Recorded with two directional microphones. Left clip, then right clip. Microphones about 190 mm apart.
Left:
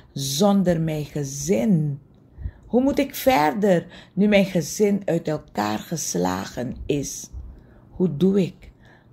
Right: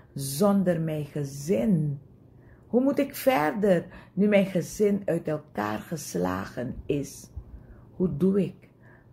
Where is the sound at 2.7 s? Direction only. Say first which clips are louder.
Left 4 dB; 30° left (ahead or behind).